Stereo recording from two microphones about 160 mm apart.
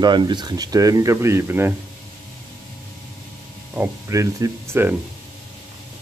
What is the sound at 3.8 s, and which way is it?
Speech, 20° right (ahead or behind).